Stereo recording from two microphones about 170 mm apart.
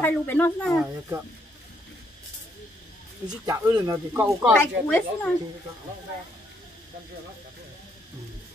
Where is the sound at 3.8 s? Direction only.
15° right (ahead or behind).